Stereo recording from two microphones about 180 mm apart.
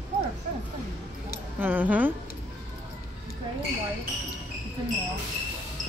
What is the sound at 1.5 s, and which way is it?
Speech, 10° right (ahead or behind).